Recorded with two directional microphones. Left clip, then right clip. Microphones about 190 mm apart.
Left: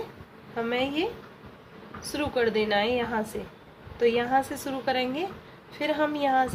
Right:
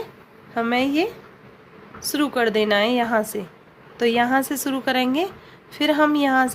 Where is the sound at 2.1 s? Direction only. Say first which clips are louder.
Right 5 dB; 60° right (ahead or behind).